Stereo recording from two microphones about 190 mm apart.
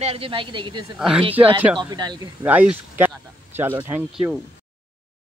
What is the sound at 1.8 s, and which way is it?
Speech, 20° right (ahead or behind).